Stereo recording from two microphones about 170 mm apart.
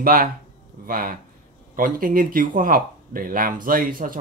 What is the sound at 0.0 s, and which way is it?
Speech, 60° right (ahead or behind).